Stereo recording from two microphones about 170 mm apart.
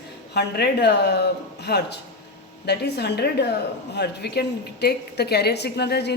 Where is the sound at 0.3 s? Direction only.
75° left (ahead or behind).